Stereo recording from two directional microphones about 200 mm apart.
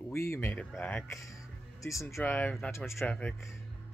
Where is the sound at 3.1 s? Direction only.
5° left (ahead or behind).